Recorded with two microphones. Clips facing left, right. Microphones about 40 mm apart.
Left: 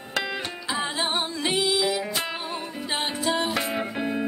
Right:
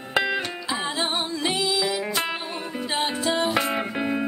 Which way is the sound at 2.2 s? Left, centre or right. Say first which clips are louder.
Right 2 dB; centre.